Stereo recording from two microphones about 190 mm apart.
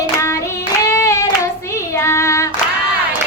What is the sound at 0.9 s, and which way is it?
Child singing, 15° left (ahead or behind).